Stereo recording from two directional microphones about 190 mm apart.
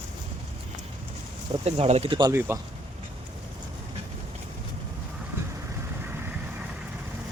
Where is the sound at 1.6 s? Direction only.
35° right (ahead or behind).